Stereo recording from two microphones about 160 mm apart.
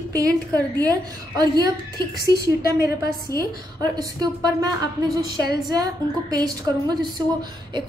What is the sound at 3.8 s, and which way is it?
A woman's voice, 25° right (ahead or behind).